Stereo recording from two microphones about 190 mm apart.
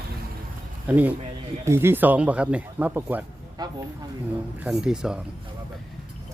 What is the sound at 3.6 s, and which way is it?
Speech, 20° right (ahead or behind).